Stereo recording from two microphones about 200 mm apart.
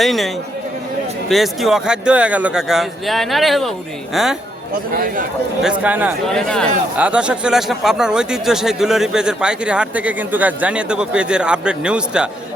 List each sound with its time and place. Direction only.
0.0 s speech: centre (ahead or behind)
1.3 s speech: centre (ahead or behind)
4.7 s a man's voice: 45° right (ahead or behind)
5.8 s a man's voice: 10° right (ahead or behind)
6.2 s speech: 5° left (ahead or behind)